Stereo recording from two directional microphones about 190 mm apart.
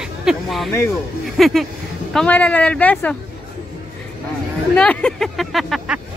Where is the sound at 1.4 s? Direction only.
Centre (ahead or behind).